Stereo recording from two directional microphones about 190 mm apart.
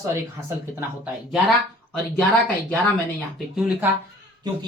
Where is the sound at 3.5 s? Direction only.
5° right (ahead or behind).